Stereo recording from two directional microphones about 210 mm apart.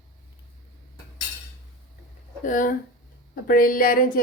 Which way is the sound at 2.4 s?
40° left (ahead or behind).